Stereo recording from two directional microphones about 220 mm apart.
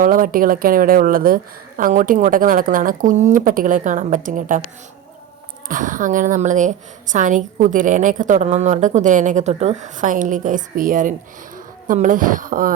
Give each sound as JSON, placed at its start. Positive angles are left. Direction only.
{"t": 0.0, "sound": "a woman's voice", "side_deg": -40}
{"t": 5.6, "sound": "a woman's voice", "side_deg": -35}